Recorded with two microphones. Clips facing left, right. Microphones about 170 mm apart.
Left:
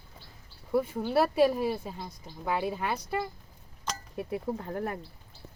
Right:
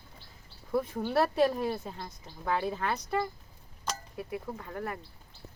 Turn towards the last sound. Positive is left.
turn(degrees=30)  # may be behind; listen again after turning